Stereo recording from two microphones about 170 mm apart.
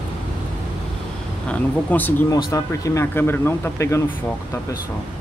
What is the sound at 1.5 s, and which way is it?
Speech, 10° left (ahead or behind).